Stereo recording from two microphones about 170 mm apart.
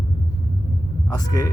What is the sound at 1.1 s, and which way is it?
Speech, 20° left (ahead or behind).